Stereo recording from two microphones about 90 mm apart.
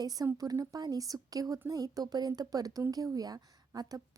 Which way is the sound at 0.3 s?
40° right (ahead or behind).